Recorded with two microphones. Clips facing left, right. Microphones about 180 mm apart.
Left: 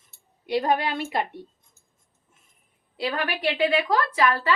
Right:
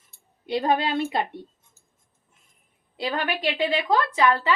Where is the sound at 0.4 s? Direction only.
25° right (ahead or behind).